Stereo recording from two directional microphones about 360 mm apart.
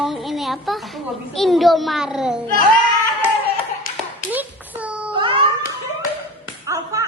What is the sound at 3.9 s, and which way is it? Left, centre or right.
Clapping, left.